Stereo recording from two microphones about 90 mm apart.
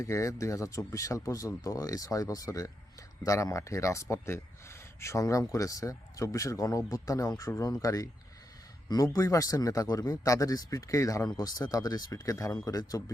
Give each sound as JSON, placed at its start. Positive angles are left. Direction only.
{"t": 0.0, "sound": "speech", "side_deg": 35}